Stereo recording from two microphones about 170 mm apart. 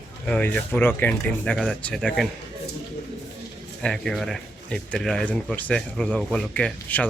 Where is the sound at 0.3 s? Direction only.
5° left (ahead or behind).